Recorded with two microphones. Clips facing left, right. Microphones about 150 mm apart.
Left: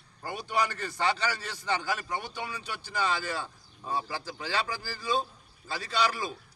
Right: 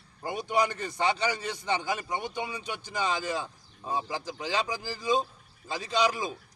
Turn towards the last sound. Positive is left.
turn(degrees=-20)  # may be behind; listen again after turning